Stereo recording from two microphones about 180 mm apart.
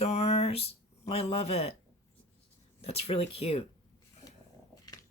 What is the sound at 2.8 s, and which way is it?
Speech, 35° left (ahead or behind).